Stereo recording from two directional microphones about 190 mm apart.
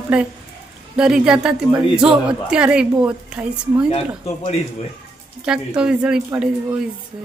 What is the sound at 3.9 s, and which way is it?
Speech, 30° left (ahead or behind).